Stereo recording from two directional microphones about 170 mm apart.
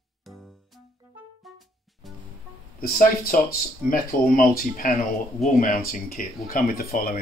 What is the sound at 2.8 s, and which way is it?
Speech, 60° left (ahead or behind).